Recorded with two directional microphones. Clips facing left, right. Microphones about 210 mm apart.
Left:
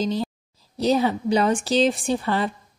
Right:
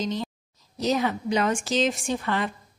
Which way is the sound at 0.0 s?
35° left (ahead or behind).